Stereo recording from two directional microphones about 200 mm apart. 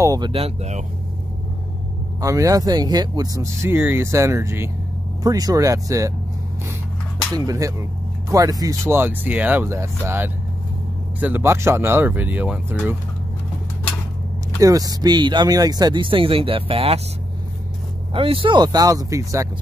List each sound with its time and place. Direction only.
0.0 s speech: 20° right (ahead or behind)
2.1 s speech: 15° right (ahead or behind)
7.3 s speech: 15° right (ahead or behind)
14.6 s speech: 15° right (ahead or behind)
18.1 s speech: 25° right (ahead or behind)